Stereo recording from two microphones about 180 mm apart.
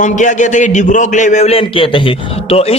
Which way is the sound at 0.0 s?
45° left (ahead or behind).